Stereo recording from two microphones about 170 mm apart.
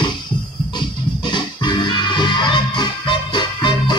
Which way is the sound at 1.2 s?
25° left (ahead or behind).